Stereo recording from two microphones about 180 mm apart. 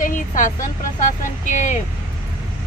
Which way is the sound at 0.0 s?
45° left (ahead or behind).